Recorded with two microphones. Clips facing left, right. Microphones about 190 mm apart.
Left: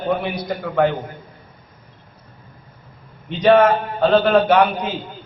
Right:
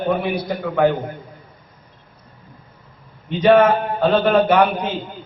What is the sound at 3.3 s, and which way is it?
A man's voice, centre (ahead or behind).